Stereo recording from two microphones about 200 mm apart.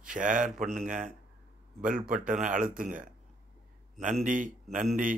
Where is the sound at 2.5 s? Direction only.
40° right (ahead or behind).